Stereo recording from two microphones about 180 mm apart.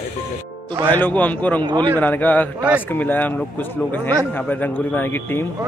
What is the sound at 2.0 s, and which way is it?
Speech, 10° left (ahead or behind).